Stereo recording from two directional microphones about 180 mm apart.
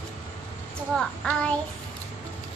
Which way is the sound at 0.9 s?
5° left (ahead or behind).